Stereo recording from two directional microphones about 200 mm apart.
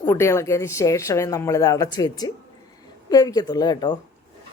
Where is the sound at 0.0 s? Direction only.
15° left (ahead or behind).